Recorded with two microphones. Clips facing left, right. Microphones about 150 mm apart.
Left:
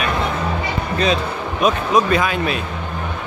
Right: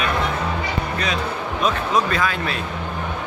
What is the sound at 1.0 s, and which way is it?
Speech, 20° left (ahead or behind).